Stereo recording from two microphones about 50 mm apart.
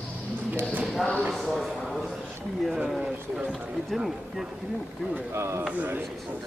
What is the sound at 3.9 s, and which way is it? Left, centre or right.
Speech, centre.